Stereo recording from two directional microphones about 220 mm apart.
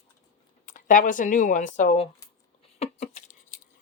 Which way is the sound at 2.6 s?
30° left (ahead or behind).